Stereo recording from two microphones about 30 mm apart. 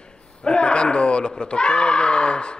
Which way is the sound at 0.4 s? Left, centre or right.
Left.